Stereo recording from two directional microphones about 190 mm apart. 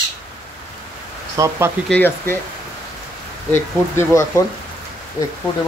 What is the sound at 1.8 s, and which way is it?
Speech, 10° left (ahead or behind).